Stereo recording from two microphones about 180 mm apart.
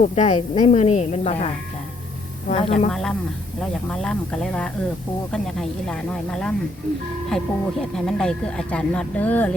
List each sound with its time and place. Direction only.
0.0 s a woman's voice: 40° left (ahead or behind)
2.5 s a woman's voice: 35° left (ahead or behind)
2.9 s speech: 5° left (ahead or behind)